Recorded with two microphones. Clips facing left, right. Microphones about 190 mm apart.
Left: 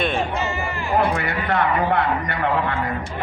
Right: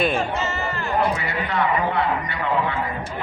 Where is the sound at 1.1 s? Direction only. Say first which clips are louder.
Left 2 dB; 55° left (ahead or behind).